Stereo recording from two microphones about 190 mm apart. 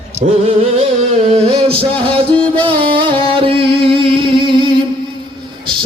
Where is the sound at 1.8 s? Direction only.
30° right (ahead or behind).